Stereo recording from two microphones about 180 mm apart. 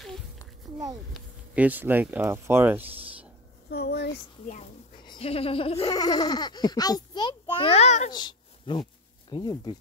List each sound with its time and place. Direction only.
1.1 s speech: 10° right (ahead or behind)
3.7 s speech: 65° left (ahead or behind)
5.0 s speech: 30° left (ahead or behind)
5.9 s a child's voice: 20° left (ahead or behind); by 8.1 s 40° left (ahead or behind)
8.1 s a sound: 25° left (ahead or behind)
9.3 s a child's voice: 25° left (ahead or behind)